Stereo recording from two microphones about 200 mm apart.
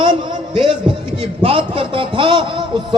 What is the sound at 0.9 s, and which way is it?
A man's voice, 25° right (ahead or behind).